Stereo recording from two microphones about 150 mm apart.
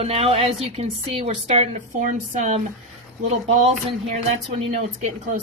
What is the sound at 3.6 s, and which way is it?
A woman's voice, 45° right (ahead or behind).